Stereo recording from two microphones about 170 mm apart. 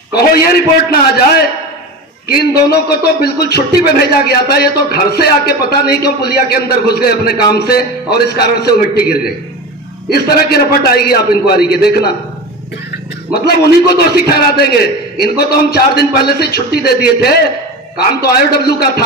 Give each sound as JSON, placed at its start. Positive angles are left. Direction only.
{"t": 0.1, "sound": "a man's voice", "side_deg": 65}
{"t": 2.2, "sound": "a man's voice", "side_deg": 70}
{"t": 13.5, "sound": "a man's voice", "side_deg": 70}